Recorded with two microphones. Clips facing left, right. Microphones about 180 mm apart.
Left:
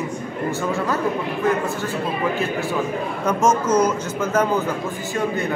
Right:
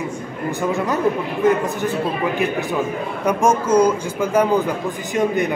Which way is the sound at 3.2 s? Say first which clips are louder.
Right 2 dB; 10° right (ahead or behind).